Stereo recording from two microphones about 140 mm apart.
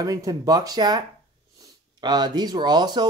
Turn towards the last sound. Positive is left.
turn(degrees=-30)  # may be behind; listen again after turning